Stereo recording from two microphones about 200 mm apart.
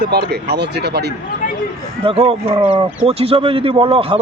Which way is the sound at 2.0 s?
25° right (ahead or behind).